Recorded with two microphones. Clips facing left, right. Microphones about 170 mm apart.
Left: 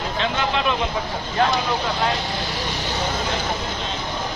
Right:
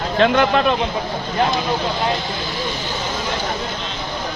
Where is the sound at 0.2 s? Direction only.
55° right (ahead or behind).